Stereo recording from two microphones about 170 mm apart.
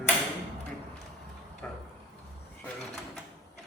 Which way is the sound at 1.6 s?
10° left (ahead or behind).